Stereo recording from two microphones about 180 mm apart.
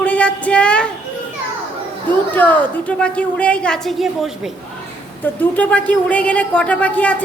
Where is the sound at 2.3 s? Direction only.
10° left (ahead or behind).